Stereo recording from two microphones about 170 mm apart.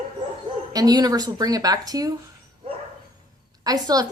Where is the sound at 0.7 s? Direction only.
20° right (ahead or behind).